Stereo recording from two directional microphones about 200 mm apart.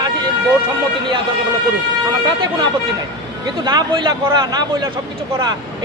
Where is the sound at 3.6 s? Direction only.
20° right (ahead or behind).